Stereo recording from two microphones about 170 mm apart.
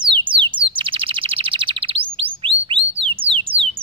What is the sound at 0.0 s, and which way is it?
Chirp, 30° right (ahead or behind).